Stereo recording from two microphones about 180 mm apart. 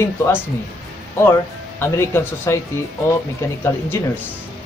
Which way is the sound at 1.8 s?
15° left (ahead or behind).